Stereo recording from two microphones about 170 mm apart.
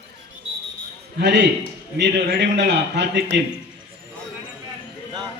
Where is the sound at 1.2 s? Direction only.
90° right.